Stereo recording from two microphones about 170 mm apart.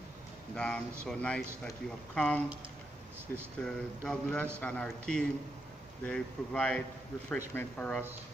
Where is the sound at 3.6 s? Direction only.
5° left (ahead or behind).